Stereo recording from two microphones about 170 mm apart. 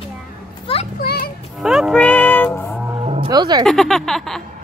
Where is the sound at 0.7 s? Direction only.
35° left (ahead or behind).